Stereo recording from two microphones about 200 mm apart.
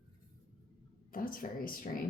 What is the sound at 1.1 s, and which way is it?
Speech, 45° left (ahead or behind).